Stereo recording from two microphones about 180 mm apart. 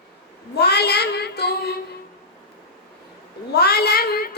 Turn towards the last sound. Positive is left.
turn(degrees=60)  # may be behind; listen again after turning